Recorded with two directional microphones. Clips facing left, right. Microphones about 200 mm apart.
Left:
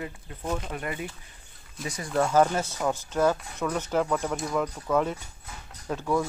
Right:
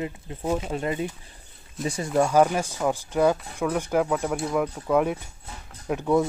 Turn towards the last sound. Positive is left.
turn(degrees=-20)  # may be behind; listen again after turning